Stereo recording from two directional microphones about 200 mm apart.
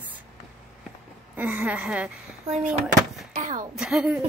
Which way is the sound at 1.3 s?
10° right (ahead or behind).